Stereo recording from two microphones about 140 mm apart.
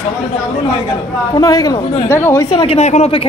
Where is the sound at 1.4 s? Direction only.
25° left (ahead or behind).